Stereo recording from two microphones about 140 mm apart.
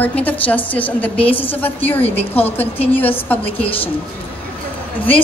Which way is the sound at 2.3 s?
15° left (ahead or behind).